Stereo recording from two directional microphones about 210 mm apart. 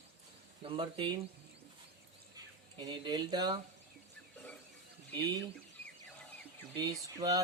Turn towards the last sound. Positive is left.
turn(degrees=-15)  # may be behind; listen again after turning